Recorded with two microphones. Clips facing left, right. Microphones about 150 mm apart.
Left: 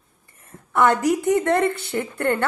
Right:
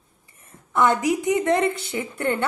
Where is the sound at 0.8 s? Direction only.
10° right (ahead or behind).